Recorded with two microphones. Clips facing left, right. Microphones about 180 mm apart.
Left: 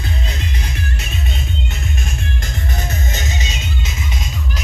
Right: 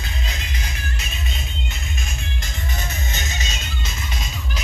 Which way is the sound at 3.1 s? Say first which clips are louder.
Left 5 dB; 35° left (ahead or behind).